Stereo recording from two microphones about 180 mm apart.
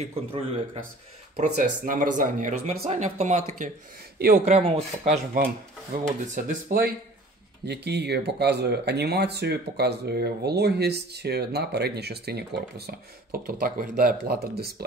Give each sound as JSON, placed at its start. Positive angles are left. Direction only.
{"t": 0.0, "sound": "speech", "side_deg": -30}
{"t": 1.3, "sound": "speech", "side_deg": -45}
{"t": 5.4, "sound": "speech", "side_deg": -50}
{"t": 7.6, "sound": "speech", "side_deg": -70}